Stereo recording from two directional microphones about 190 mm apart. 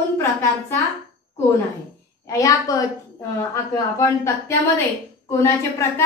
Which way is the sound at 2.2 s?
20° left (ahead or behind).